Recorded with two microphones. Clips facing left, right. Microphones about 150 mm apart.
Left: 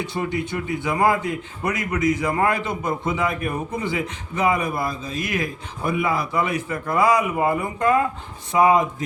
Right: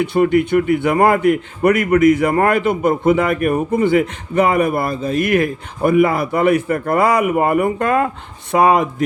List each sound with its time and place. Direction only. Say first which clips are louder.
0.0 s a man's voice: right 11 dB; 60° right (ahead or behind)